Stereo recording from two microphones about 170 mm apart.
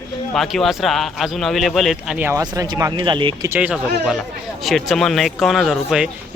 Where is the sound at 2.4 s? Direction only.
20° right (ahead or behind).